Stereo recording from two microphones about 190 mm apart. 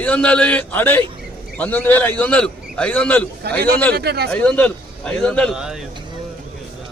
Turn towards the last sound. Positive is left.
turn(degrees=-5)  # may be behind; listen again after turning